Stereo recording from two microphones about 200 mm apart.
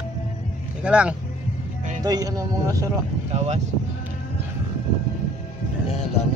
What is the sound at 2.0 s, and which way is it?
Speech, 20° right (ahead or behind).